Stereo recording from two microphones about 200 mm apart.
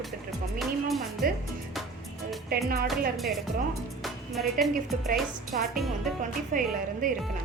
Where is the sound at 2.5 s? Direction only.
50° right (ahead or behind).